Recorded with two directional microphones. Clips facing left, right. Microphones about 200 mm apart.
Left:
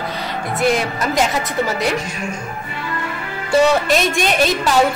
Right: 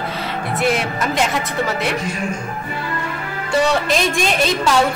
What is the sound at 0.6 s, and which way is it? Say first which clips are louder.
A woman's voice: left 2 dB; centre (ahead or behind).